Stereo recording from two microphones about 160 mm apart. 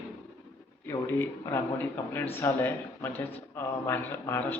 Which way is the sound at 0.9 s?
20° left (ahead or behind).